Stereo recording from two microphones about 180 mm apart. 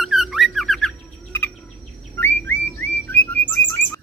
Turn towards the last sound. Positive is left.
turn(degrees=10)  # may be behind; listen again after turning